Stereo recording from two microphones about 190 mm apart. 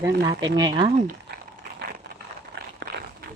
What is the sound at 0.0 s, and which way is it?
Speech, 20° right (ahead or behind).